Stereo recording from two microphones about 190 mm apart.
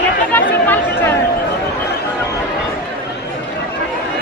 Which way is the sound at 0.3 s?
10° left (ahead or behind).